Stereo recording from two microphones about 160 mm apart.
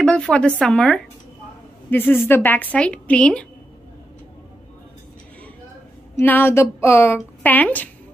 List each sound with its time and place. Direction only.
0.0 s a woman's voice: 5° left (ahead or behind)
6.1 s a woman's voice: 15° left (ahead or behind)